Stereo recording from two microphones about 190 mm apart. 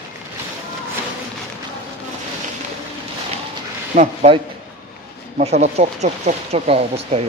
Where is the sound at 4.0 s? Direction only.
30° right (ahead or behind).